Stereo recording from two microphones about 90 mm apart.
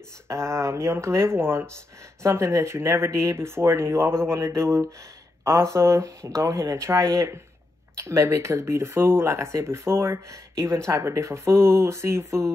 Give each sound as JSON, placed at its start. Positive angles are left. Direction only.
{"t": 0.3, "sound": "speech", "side_deg": -30}